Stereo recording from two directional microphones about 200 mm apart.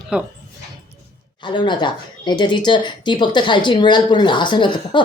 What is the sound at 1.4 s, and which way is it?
Speech, 25° left (ahead or behind).